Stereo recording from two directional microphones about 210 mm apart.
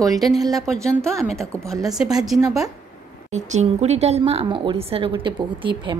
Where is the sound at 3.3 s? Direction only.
35° right (ahead or behind).